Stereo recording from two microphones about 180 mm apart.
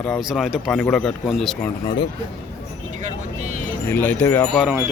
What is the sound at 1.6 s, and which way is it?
Speech, 25° left (ahead or behind).